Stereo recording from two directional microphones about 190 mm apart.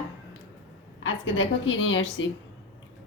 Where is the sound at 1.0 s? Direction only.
90° left.